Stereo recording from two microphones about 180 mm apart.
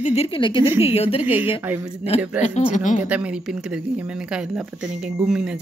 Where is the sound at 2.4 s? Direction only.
45° left (ahead or behind).